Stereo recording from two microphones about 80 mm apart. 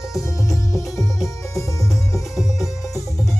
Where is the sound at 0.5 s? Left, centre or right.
Left.